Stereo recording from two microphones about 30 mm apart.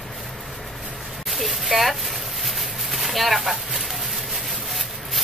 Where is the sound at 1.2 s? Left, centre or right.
Centre.